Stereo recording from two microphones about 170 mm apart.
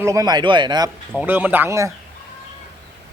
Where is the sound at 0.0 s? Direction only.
20° right (ahead or behind).